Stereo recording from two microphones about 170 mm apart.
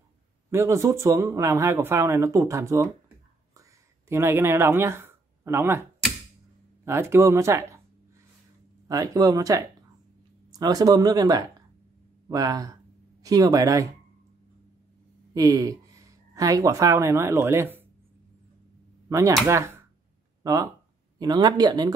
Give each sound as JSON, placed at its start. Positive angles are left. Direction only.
{"t": 0.5, "sound": "speech", "side_deg": -15}
{"t": 4.1, "sound": "speech", "side_deg": -15}
{"t": 8.8, "sound": "speech", "side_deg": -20}
{"t": 15.3, "sound": "speech", "side_deg": -20}
{"t": 19.0, "sound": "speech", "side_deg": -15}